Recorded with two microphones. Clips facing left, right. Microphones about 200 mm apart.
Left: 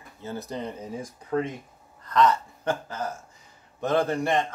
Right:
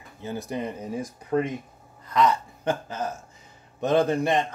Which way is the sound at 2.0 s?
10° right (ahead or behind).